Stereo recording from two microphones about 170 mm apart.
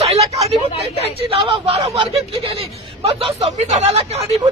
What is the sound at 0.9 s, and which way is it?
Speech, 35° right (ahead or behind).